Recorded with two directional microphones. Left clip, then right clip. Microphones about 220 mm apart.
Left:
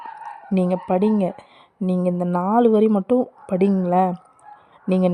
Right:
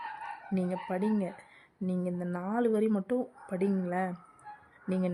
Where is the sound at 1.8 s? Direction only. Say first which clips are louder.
Left 13 dB; centre (ahead or behind).